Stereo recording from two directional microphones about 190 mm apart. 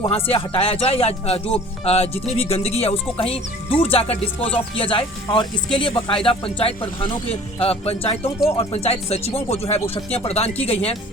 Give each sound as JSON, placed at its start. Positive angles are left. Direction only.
{"t": 0.0, "sound": "speech", "side_deg": 30}